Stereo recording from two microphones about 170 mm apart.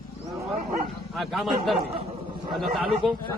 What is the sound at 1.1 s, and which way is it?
Speech, centre (ahead or behind).